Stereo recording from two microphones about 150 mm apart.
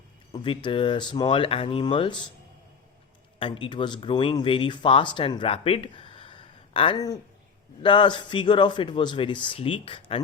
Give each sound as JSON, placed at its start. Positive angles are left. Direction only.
{"t": 0.3, "sound": "speech", "side_deg": 35}
{"t": 3.3, "sound": "speech", "side_deg": 35}